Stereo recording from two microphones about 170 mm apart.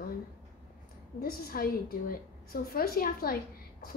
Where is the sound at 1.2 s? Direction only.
60° left (ahead or behind).